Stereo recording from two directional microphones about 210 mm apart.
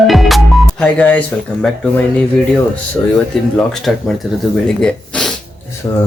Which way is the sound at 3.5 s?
Centre (ahead or behind).